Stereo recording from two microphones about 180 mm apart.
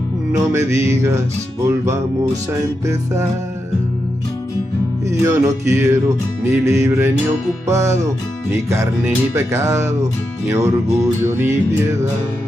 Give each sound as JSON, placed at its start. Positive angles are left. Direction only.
{"t": 0.3, "sound": "speech", "side_deg": -15}
{"t": 5.2, "sound": "speech", "side_deg": -15}